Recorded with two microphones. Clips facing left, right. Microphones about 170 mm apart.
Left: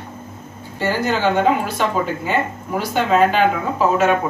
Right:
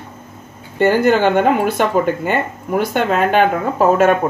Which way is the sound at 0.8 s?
55° right (ahead or behind).